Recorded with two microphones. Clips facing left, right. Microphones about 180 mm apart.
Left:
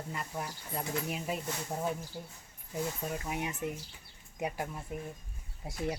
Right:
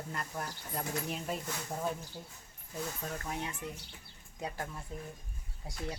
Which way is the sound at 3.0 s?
10° left (ahead or behind).